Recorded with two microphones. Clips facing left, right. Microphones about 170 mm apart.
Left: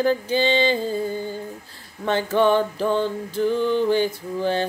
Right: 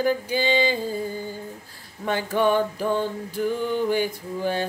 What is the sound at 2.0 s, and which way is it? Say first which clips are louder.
Music: left 3 dB; 10° right (ahead or behind).